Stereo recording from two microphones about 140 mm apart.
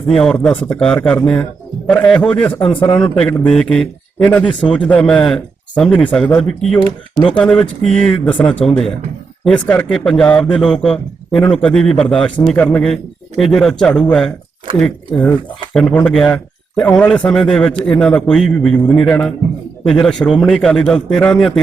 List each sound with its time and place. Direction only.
0.1 s speech: 5° left (ahead or behind)
2.6 s speech: 40° left (ahead or behind)
2.9 s a man's voice: 10° left (ahead or behind)